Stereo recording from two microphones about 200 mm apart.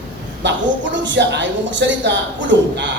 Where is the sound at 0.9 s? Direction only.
65° right (ahead or behind).